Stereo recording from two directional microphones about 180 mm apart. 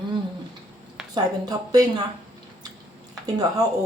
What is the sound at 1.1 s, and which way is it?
Speech, 20° right (ahead or behind).